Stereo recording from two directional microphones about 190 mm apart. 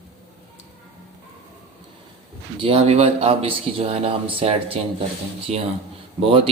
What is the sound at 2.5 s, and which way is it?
Speech, 30° right (ahead or behind).